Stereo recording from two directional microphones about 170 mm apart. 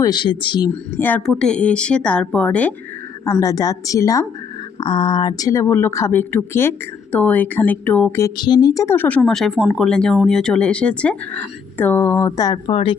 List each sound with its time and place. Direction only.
0.0 s speech: 25° left (ahead or behind)
0.9 s speech: 10° left (ahead or behind)
3.4 s speech: 20° left (ahead or behind)
8.4 s speech: 25° left (ahead or behind)